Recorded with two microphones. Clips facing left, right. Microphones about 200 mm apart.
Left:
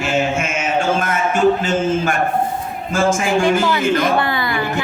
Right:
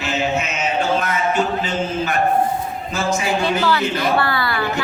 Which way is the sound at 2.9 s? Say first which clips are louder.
Left 5 dB; 50° left (ahead or behind).